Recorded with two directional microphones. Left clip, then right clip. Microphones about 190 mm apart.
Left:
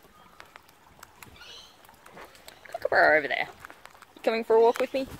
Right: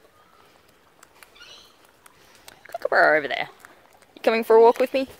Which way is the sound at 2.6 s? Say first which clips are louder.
Right 3 dB; 30° right (ahead or behind).